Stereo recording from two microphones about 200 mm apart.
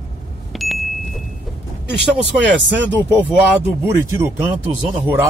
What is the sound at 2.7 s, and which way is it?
Speech, 10° right (ahead or behind).